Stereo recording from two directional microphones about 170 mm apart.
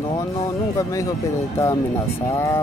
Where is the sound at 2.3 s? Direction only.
15° left (ahead or behind).